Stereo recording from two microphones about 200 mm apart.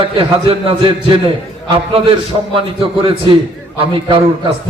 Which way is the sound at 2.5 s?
25° right (ahead or behind).